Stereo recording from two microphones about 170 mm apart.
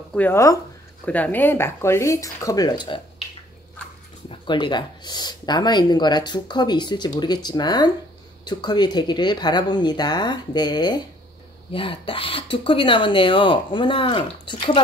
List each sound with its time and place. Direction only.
0.1 s speech: 10° left (ahead or behind)
4.3 s speech: 25° left (ahead or behind)